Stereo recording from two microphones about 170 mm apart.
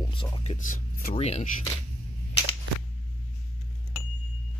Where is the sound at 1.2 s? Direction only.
40° left (ahead or behind).